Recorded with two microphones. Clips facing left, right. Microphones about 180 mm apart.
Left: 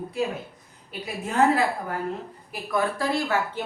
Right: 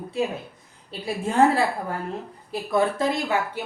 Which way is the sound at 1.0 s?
30° right (ahead or behind).